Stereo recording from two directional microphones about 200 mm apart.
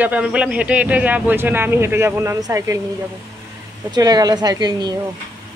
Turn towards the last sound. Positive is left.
turn(degrees=-20)  # may be behind; listen again after turning